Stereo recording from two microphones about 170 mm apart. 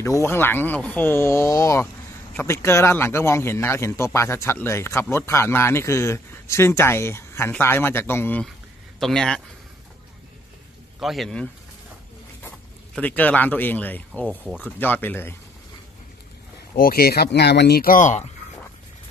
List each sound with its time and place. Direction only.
0.0 s a man's voice: 15° left (ahead or behind)
11.0 s a man's voice: centre (ahead or behind)
12.9 s a man's voice: 10° left (ahead or behind)
16.7 s speech: 60° left (ahead or behind); by 18.3 s 45° left (ahead or behind)